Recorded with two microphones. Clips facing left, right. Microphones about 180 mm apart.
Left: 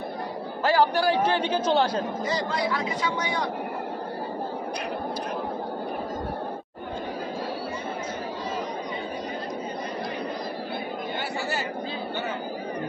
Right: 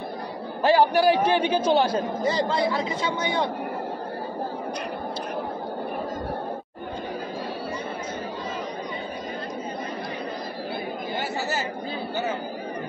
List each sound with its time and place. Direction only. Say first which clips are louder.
0.7 s a man's voice: right 3 dB; 15° right (ahead or behind)
2.2 s speech: right 4 dB; 25° right (ahead or behind)